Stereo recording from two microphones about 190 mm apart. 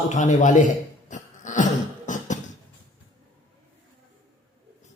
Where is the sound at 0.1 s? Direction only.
40° left (ahead or behind).